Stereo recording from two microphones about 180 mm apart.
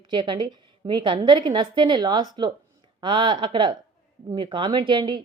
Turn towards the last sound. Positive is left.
turn(degrees=-25)  # may be behind; listen again after turning